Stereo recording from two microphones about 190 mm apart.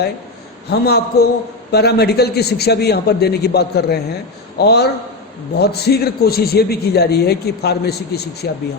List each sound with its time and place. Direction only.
0.7 s a man's voice: 60° left (ahead or behind)